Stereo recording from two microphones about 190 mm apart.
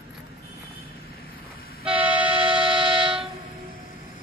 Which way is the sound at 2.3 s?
25° right (ahead or behind).